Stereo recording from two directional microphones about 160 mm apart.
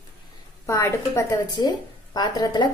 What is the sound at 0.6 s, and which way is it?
A woman's voice, 15° left (ahead or behind).